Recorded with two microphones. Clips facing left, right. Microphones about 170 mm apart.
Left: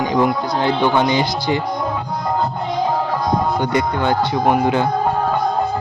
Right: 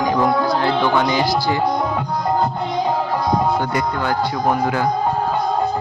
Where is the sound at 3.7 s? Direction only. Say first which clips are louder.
Left 3 dB; 20° left (ahead or behind).